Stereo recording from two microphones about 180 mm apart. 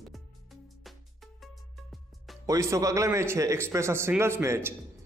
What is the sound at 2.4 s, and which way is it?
A man's voice, 15° right (ahead or behind).